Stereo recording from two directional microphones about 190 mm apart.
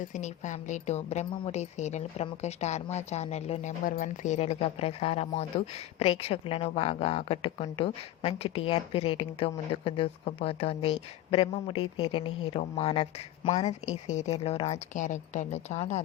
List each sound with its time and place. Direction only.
0.0 s speech: 40° left (ahead or behind)
3.8 s speech: 45° left (ahead or behind)